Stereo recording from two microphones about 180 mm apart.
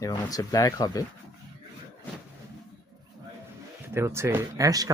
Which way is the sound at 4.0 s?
15° right (ahead or behind).